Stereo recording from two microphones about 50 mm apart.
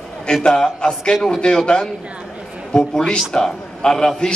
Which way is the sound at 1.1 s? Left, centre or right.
Centre.